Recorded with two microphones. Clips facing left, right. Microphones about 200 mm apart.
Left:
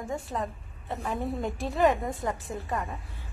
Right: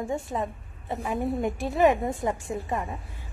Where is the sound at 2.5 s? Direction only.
20° right (ahead or behind).